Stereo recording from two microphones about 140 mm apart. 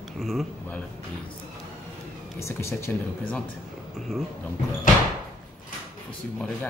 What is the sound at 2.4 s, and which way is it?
Speech, 20° left (ahead or behind).